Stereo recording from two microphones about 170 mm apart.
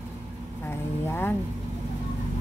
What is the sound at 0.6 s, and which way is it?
Speech, 15° left (ahead or behind).